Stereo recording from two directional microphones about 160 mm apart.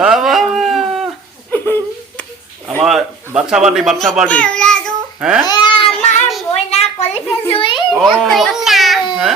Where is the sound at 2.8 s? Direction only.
Centre (ahead or behind).